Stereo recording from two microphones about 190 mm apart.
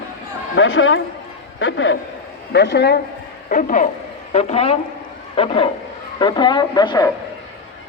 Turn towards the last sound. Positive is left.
turn(degrees=20)  # may be behind; listen again after turning